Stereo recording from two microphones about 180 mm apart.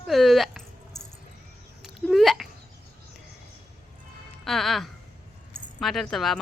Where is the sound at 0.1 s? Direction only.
Centre (ahead or behind).